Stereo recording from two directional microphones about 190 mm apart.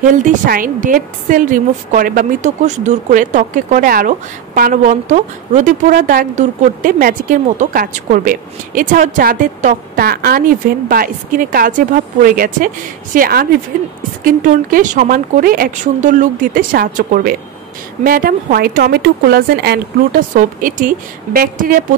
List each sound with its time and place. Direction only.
0.0 s a woman's voice: 40° right (ahead or behind)